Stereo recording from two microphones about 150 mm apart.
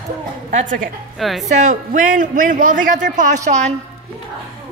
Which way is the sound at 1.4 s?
55° right (ahead or behind).